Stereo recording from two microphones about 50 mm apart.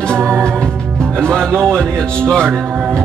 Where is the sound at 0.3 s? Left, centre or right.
Centre.